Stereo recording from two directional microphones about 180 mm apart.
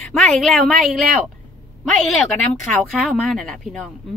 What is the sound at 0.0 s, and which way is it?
Speech, centre (ahead or behind).